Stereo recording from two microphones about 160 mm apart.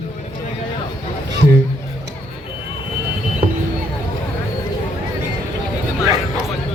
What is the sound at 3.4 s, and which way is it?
Vehicle, 65° right (ahead or behind).